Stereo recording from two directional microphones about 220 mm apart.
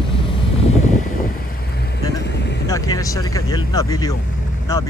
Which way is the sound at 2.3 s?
50° left (ahead or behind).